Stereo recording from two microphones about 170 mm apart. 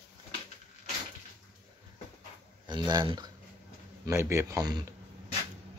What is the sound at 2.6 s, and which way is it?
Speech, 25° right (ahead or behind).